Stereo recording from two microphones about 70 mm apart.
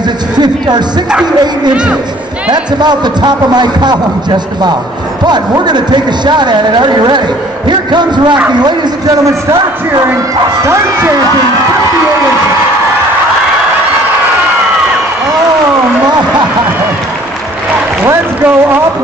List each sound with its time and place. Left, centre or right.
0.4 s speech: right
2.5 s speech: right
8.5 s a man's voice: right
10.6 s speech: right
18.0 s a sound: right